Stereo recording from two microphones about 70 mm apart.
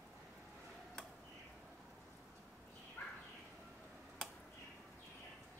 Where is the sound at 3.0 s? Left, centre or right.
Left.